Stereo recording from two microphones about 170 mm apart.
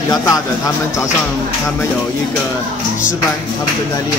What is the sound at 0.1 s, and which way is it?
Speech, 20° left (ahead or behind).